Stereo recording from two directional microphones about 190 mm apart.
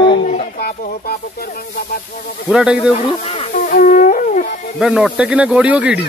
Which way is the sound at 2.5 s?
5° right (ahead or behind).